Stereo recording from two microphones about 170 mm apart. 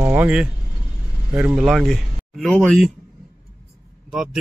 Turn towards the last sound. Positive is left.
turn(degrees=-5)  # may be behind; listen again after turning